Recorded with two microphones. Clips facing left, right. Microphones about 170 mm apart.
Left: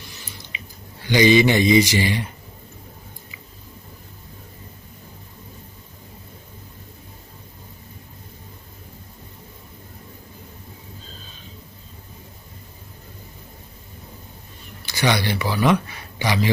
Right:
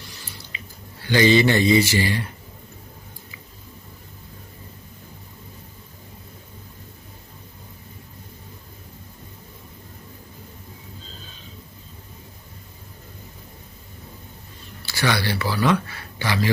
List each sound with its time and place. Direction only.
0.5 s chewing: 20° left (ahead or behind)
1.0 s speech: 15° left (ahead or behind)
14.8 s speech: 20° left (ahead or behind)